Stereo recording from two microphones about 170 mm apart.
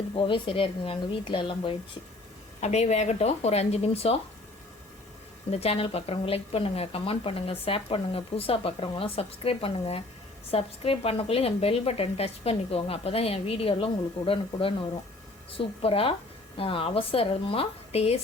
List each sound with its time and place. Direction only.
0.1 s a woman's voice: 30° left (ahead or behind)
5.5 s a woman's voice: 35° left (ahead or behind)